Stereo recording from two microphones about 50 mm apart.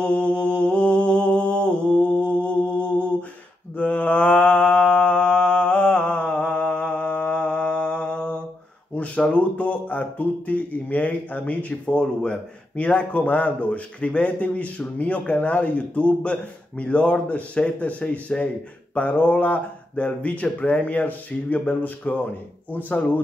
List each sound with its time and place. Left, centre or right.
0.0 s mantra: left
3.7 s mantra: left
8.9 s a sound: left
9.3 s speech: left
11.8 s a man's voice: centre; by 23.2 s left